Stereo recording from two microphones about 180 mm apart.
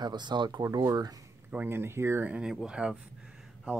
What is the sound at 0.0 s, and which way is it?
Speech, 25° right (ahead or behind).